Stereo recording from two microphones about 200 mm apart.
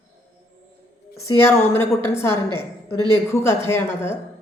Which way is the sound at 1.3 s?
10° left (ahead or behind).